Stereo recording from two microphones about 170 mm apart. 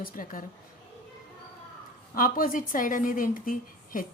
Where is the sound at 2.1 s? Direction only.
55° left (ahead or behind).